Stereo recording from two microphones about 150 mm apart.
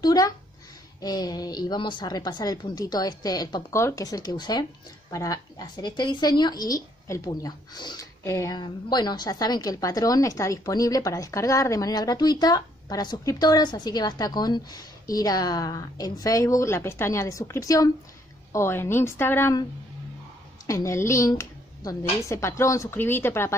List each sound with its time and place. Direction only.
0.0 s a woman's voice: 25° left (ahead or behind)
8.2 s a woman's voice: 20° left (ahead or behind)
20.6 s a woman's voice: 20° left (ahead or behind)